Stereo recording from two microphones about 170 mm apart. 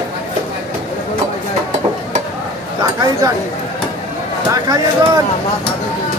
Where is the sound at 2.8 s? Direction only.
20° right (ahead or behind).